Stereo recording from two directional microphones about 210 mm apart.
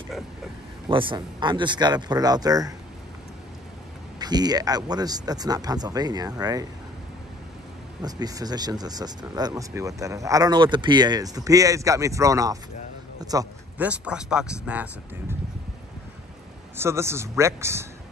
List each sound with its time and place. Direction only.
0.8 s speech: 25° right (ahead or behind)
4.2 s speech: 20° right (ahead or behind)
8.0 s a man's voice: 20° right (ahead or behind)
13.8 s speech: 5° right (ahead or behind)
16.7 s speech: 10° right (ahead or behind)